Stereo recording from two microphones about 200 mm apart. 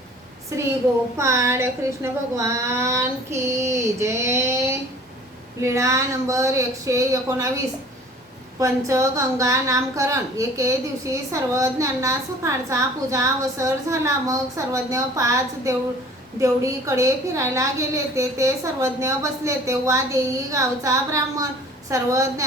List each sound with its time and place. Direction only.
0.5 s a child's voice: 15° right (ahead or behind)